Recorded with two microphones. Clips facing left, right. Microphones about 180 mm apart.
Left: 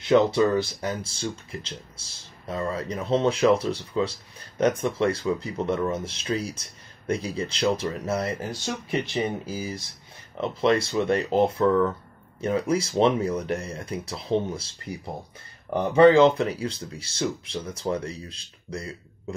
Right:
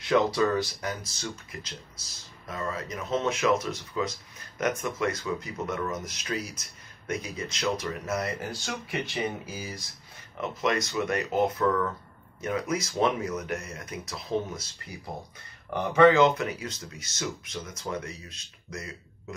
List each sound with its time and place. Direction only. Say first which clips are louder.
0.0 s speech: left 4 dB; 25° left (ahead or behind)